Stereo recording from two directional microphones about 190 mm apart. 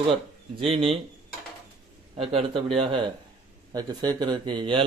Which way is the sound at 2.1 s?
30° right (ahead or behind).